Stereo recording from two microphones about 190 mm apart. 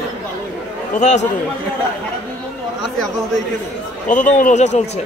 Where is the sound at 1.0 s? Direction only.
40° left (ahead or behind).